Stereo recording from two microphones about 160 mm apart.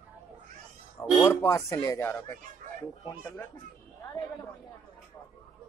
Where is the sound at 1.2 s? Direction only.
20° left (ahead or behind).